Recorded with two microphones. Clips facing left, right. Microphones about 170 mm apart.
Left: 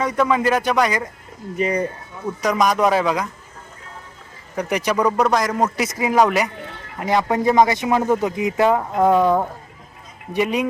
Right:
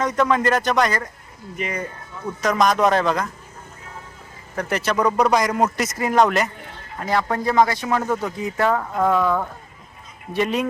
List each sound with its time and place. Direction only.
0.0 s speech: 10° left (ahead or behind)
1.5 s speech: 35° left (ahead or behind)
2.4 s speech: 10° left (ahead or behind)
4.5 s a man's voice: 15° left (ahead or behind)
9.1 s speech: 30° left (ahead or behind)
10.3 s speech: 10° left (ahead or behind)